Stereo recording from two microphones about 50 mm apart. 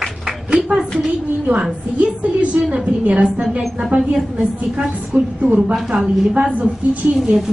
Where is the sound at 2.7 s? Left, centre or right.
Right.